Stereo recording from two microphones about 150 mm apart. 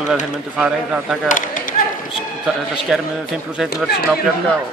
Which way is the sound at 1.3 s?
60° left (ahead or behind).